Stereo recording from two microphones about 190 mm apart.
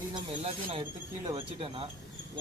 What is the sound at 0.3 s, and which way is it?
Speech, 30° right (ahead or behind).